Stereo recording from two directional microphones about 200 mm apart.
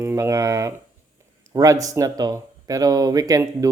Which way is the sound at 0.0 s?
15° right (ahead or behind).